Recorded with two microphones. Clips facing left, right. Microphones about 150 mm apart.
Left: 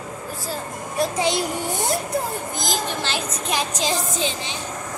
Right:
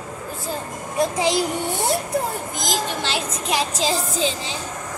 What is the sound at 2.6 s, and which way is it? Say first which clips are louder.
Speech: right 2 dB; 25° right (ahead or behind).